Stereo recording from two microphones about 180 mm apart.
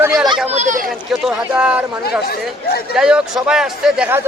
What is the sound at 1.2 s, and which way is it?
Speech, 5° right (ahead or behind).